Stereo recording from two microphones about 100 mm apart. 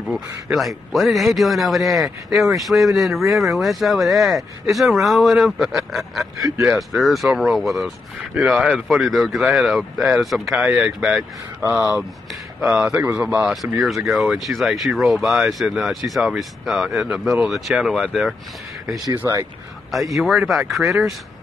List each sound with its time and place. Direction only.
0.1 s a man's voice: centre (ahead or behind)
11.6 s speech: 25° right (ahead or behind)
12.0 s a man's voice: centre (ahead or behind)
13.6 s a man's voice: centre (ahead or behind)
19.9 s a man's voice: centre (ahead or behind)